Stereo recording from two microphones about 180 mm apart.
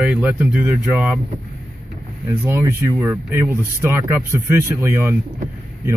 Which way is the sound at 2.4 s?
15° right (ahead or behind).